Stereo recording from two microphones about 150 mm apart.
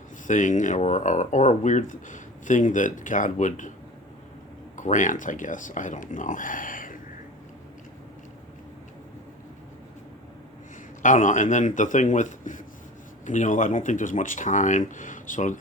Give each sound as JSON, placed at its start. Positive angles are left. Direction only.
{"t": 0.3, "sound": "speech", "side_deg": 60}
{"t": 4.8, "sound": "speech", "side_deg": 55}
{"t": 11.0, "sound": "speech", "side_deg": 60}